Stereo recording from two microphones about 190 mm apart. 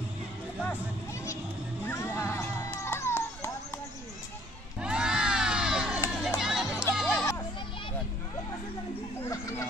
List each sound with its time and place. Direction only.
1.9 s music: 15° left (ahead or behind)
4.7 s crowd: 5° right (ahead or behind)
6.0 s run: 5° right (ahead or behind)